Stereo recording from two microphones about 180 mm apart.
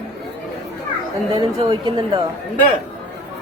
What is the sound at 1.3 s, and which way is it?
Speech, 30° right (ahead or behind).